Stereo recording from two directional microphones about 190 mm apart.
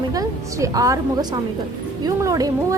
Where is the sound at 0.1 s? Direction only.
15° right (ahead or behind).